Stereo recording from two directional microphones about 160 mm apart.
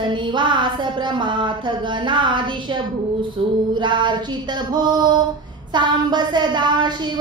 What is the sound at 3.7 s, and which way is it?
A woman's voice, 30° right (ahead or behind).